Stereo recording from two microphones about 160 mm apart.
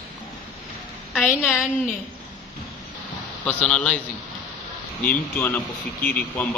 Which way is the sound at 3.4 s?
5° left (ahead or behind).